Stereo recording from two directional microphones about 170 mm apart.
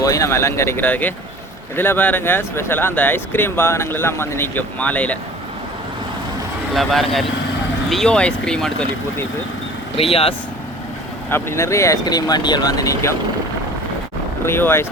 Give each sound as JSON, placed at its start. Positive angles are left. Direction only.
{"t": 0.0, "sound": "speech", "side_deg": 20}
{"t": 6.7, "sound": "speech", "side_deg": 0}
{"t": 10.0, "sound": "speech", "side_deg": 35}
{"t": 11.3, "sound": "speech", "side_deg": 15}
{"t": 14.4, "sound": "speech", "side_deg": 15}